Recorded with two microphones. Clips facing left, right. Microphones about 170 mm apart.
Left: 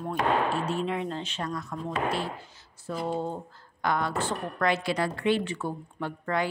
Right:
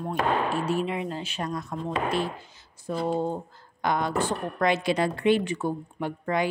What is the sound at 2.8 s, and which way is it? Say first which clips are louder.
Speech: right 4 dB; 15° right (ahead or behind).